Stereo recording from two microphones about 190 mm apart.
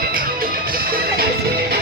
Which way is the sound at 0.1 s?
50° right (ahead or behind).